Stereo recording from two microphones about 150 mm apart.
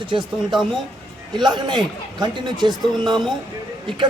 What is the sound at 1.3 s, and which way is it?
Speech, 30° right (ahead or behind).